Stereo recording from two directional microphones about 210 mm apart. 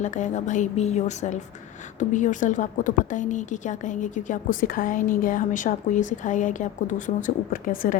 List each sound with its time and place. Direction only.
0.0 s a woman's voice: 35° left (ahead or behind)